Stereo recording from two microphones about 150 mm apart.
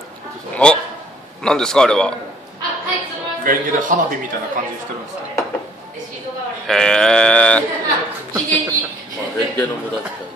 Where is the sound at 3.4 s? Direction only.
65° right (ahead or behind).